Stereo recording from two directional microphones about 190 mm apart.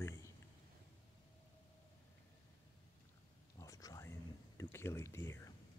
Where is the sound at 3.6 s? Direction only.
20° left (ahead or behind).